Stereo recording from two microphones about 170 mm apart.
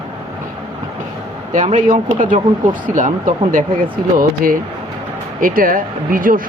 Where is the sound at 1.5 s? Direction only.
45° right (ahead or behind).